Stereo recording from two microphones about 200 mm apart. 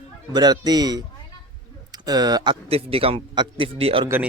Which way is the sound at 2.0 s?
20° right (ahead or behind).